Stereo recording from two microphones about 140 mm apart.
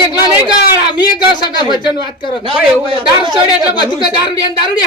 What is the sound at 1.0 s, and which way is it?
Speech, 30° left (ahead or behind).